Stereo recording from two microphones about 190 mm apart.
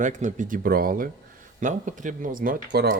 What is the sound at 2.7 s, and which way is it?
Speech, 65° right (ahead or behind).